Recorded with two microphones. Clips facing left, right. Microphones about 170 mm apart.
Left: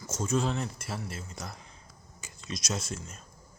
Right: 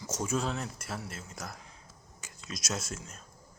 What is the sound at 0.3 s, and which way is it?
Speech, centre (ahead or behind).